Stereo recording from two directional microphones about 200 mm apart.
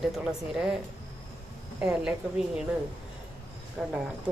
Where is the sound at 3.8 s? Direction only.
5° right (ahead or behind).